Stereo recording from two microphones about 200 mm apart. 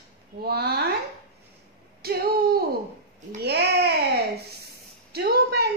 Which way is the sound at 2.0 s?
50° right (ahead or behind).